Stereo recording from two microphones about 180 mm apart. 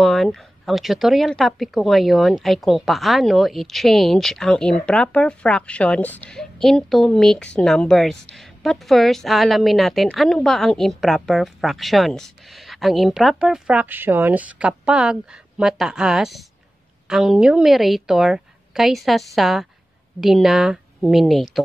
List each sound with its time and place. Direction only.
0.0 s a woman's voice: centre (ahead or behind)